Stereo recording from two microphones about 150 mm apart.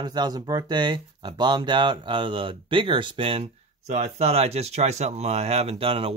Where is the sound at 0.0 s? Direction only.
30° right (ahead or behind).